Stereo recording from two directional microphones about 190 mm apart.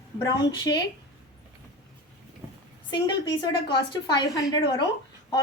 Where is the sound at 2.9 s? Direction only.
25° left (ahead or behind).